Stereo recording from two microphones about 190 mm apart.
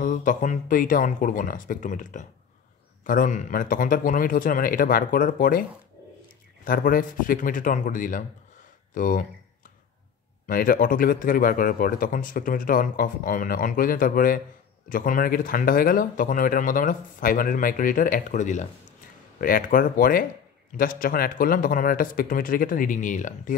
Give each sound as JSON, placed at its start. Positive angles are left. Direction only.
{"t": 0.0, "sound": "speech", "side_deg": 45}
{"t": 10.4, "sound": "speech", "side_deg": 45}